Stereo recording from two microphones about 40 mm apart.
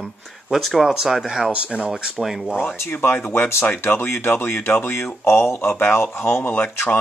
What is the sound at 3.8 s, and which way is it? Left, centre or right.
Speech, left.